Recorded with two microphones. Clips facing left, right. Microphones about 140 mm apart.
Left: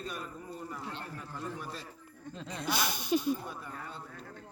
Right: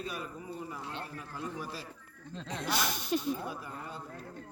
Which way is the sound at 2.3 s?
Centre (ahead or behind).